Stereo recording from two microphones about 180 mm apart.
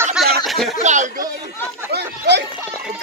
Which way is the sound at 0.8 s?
40° right (ahead or behind).